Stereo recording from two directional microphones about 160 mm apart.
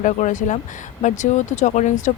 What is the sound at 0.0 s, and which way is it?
Speech, 50° left (ahead or behind).